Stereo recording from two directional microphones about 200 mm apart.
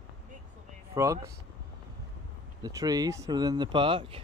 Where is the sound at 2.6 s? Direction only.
20° right (ahead or behind).